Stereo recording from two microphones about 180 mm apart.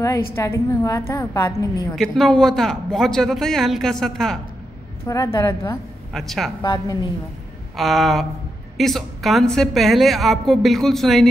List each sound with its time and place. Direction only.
0.4 s a woman's voice: 15° left (ahead or behind)
2.0 s a woman's voice: centre (ahead or behind)
5.0 s a woman's voice: 15° left (ahead or behind)
6.1 s a woman's voice: centre (ahead or behind)
6.6 s a woman's voice: 25° left (ahead or behind)
7.7 s a woman's voice: centre (ahead or behind)